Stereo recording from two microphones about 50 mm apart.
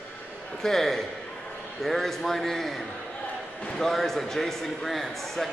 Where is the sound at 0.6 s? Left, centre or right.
Centre.